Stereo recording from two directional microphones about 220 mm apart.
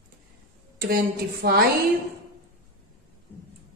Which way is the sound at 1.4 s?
45° right (ahead or behind).